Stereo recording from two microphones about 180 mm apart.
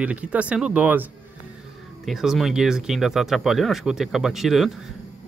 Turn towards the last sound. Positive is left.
turn(degrees=0)  # may be behind; listen again after turning